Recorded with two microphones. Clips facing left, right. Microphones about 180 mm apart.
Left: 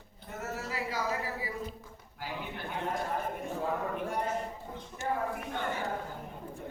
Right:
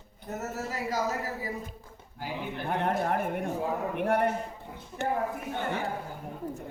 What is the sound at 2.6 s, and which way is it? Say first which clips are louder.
Speech: right 7 dB; 65° right (ahead or behind).